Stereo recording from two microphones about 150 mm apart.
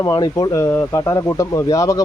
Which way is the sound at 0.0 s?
25° left (ahead or behind).